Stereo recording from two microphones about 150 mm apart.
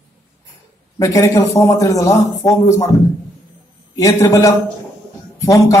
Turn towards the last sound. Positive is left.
turn(degrees=20)  # may be behind; listen again after turning